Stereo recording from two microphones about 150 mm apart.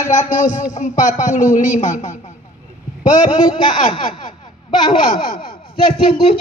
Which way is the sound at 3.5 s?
30° left (ahead or behind).